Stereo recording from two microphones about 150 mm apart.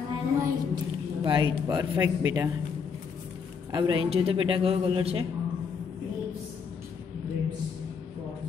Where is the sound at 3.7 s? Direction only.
30° right (ahead or behind).